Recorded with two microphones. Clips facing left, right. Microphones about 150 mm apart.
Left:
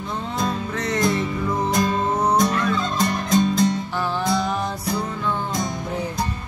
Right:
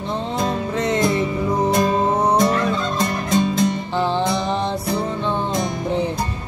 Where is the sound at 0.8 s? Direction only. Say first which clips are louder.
Right 2 dB; 25° right (ahead or behind).